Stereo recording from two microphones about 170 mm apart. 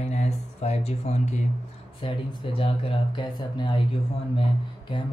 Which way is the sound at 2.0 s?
30° left (ahead or behind).